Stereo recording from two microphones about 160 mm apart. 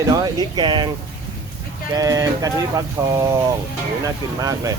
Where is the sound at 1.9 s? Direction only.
25° right (ahead or behind).